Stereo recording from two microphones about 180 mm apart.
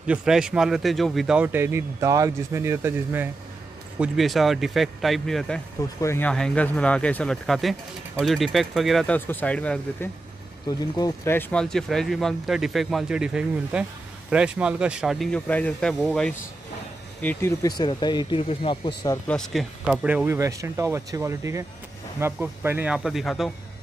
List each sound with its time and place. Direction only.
0.0 s speech: 5° right (ahead or behind)
4.0 s speech: centre (ahead or behind)
5.9 s speech: 15° left (ahead or behind)
19.2 s speech: 5° left (ahead or behind)